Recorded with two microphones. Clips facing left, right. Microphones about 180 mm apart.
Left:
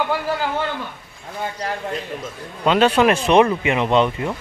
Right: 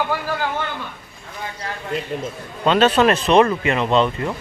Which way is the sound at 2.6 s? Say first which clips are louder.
Even; 10° left (ahead or behind).